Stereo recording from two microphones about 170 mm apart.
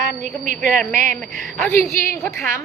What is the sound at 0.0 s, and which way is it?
A woman's voice, 50° right (ahead or behind).